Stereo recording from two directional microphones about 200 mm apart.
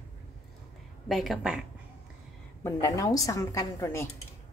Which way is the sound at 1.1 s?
Centre (ahead or behind).